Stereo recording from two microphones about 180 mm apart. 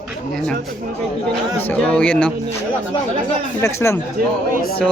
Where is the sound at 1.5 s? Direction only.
5° left (ahead or behind).